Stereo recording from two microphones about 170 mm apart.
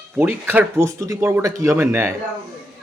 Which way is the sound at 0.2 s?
10° right (ahead or behind).